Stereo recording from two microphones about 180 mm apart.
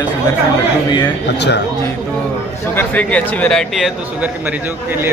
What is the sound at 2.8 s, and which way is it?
Speech, 10° left (ahead or behind).